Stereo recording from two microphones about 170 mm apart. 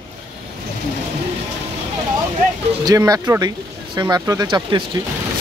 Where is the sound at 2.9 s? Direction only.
20° right (ahead or behind).